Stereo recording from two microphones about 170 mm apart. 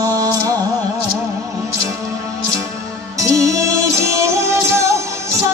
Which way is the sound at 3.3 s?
20° right (ahead or behind).